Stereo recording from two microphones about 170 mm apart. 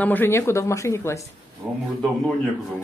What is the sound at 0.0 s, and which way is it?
Speech, 10° left (ahead or behind).